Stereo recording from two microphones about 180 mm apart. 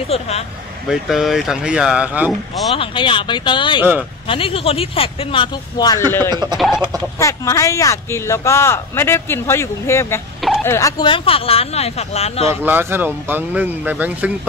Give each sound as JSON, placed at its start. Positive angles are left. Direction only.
{"t": 0.1, "sound": "speech", "side_deg": 35}
{"t": 0.8, "sound": "speech", "side_deg": 0}
{"t": 2.7, "sound": "speech", "side_deg": 30}
{"t": 6.5, "sound": "speech", "side_deg": 0}
{"t": 7.2, "sound": "speech", "side_deg": 15}
{"t": 12.6, "sound": "speech", "side_deg": -10}